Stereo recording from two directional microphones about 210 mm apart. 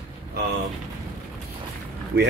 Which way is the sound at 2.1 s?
55° right (ahead or behind).